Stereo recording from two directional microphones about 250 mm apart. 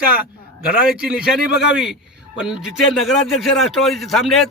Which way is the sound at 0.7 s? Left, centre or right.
Centre.